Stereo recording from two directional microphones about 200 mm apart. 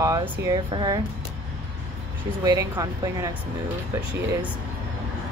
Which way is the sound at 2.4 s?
15° right (ahead or behind).